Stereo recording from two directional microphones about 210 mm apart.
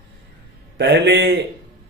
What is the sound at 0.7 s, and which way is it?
Speech, 55° right (ahead or behind).